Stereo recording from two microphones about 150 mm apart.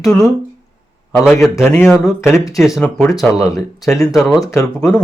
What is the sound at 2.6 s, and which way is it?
Speech, centre (ahead or behind).